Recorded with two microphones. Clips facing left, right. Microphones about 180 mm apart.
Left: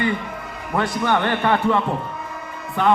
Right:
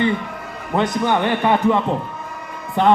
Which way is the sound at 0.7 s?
20° right (ahead or behind).